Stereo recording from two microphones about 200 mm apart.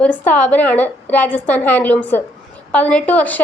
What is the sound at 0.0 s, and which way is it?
A woman's voice, 5° left (ahead or behind).